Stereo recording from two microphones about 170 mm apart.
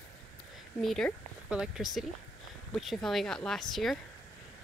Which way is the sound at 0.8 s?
Centre (ahead or behind).